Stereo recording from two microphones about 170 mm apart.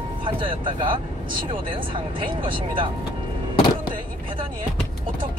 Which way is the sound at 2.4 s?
30° right (ahead or behind).